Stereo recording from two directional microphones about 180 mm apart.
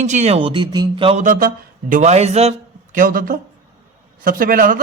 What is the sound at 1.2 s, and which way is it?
A man's voice, 45° right (ahead or behind).